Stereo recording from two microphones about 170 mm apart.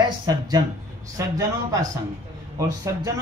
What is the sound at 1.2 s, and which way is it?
Speech, 20° right (ahead or behind).